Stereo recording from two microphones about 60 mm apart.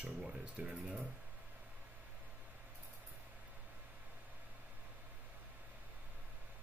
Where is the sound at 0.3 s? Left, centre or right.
Right.